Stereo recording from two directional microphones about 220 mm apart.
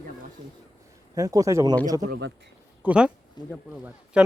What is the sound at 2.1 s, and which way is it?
Speech, 55° right (ahead or behind).